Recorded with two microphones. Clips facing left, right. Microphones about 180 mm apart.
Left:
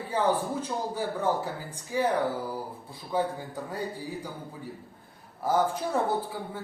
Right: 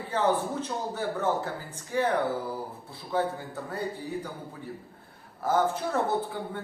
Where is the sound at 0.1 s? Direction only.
10° left (ahead or behind).